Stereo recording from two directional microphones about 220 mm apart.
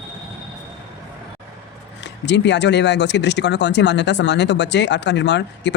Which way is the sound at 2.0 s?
55° left (ahead or behind).